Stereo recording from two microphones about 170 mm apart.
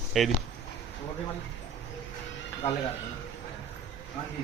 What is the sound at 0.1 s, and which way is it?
Speech, centre (ahead or behind).